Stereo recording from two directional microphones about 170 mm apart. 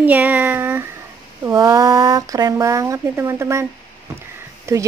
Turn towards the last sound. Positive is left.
turn(degrees=-15)  # may be behind; listen again after turning